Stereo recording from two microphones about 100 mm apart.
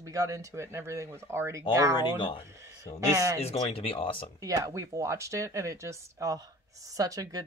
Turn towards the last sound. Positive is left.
turn(degrees=-35)  # may be behind; listen again after turning